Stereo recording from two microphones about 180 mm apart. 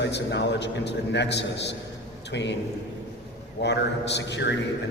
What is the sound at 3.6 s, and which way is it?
Speech, 70° left (ahead or behind).